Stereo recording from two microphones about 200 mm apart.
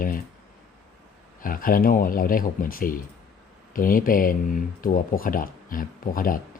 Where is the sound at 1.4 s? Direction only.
45° left (ahead or behind).